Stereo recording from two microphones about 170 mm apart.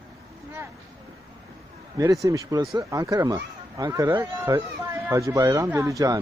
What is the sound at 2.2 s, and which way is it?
Speech, 20° right (ahead or behind).